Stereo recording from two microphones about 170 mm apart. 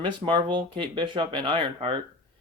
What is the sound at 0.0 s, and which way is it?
Speech, 25° right (ahead or behind).